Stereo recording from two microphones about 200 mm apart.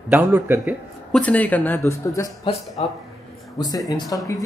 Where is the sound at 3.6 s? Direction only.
20° left (ahead or behind).